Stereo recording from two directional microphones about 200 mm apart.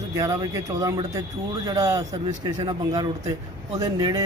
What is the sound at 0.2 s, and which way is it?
Speech, 15° right (ahead or behind).